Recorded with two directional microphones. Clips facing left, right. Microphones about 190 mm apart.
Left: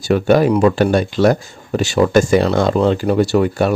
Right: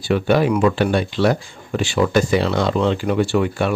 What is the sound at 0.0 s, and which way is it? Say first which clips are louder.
Speech: left 4 dB; 45° left (ahead or behind).